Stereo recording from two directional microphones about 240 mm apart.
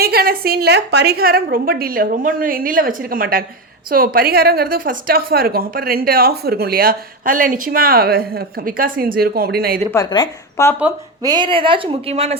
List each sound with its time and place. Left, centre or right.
0.0 s a woman's voice: right
9.9 s a woman's voice: centre
11.2 s a woman's voice: centre